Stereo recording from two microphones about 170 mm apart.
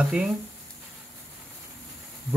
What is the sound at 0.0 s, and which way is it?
Speech, 5° right (ahead or behind).